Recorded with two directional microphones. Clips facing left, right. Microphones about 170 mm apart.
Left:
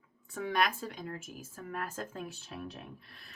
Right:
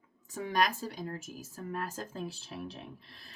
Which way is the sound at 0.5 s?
40° right (ahead or behind).